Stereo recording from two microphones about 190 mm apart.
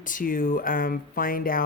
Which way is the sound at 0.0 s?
45° left (ahead or behind).